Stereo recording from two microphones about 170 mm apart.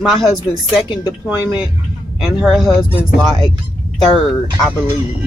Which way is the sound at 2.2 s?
5° right (ahead or behind).